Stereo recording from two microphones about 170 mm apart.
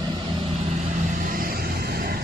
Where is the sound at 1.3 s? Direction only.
60° right (ahead or behind).